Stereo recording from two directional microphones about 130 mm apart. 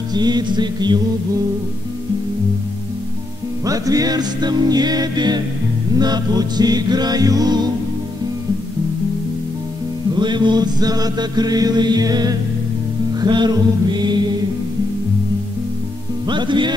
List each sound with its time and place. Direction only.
0.1 s chant: 30° right (ahead or behind)
3.6 s chant: 25° right (ahead or behind)
10.1 s chant: 35° right (ahead or behind)
16.3 s chant: 35° right (ahead or behind)